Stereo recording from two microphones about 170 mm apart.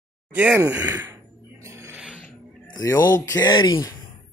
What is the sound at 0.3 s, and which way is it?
Speech, 10° right (ahead or behind).